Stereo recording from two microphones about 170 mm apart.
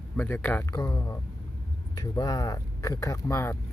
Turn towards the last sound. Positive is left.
turn(degrees=15)  # may be behind; listen again after turning